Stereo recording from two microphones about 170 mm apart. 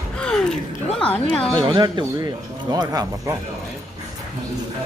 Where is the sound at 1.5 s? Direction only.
25° right (ahead or behind).